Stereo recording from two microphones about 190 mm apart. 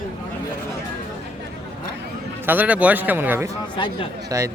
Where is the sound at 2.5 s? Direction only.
10° right (ahead or behind).